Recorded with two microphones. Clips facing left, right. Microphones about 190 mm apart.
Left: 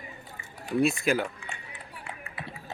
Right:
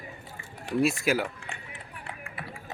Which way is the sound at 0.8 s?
5° right (ahead or behind).